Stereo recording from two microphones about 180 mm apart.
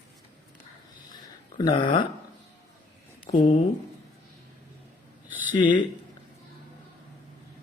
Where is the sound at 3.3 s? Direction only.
25° left (ahead or behind).